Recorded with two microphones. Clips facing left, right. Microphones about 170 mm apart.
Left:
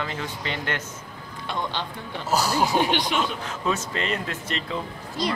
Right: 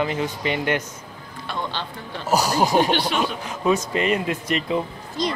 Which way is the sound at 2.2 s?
15° right (ahead or behind).